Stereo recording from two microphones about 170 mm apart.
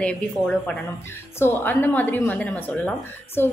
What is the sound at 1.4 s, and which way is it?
A woman's voice, 10° left (ahead or behind).